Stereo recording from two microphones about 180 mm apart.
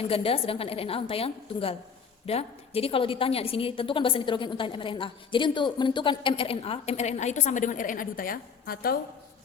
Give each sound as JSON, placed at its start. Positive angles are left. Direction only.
{"t": 0.1, "sound": "a woman's voice", "side_deg": 30}